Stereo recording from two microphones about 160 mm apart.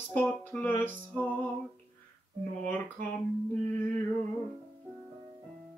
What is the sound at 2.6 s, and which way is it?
Music, 10° left (ahead or behind).